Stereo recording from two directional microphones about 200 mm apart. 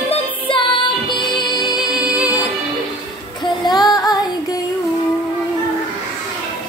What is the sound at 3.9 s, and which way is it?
Female singing, 20° left (ahead or behind).